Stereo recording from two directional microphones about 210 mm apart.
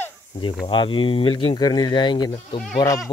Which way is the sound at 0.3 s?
25° left (ahead or behind).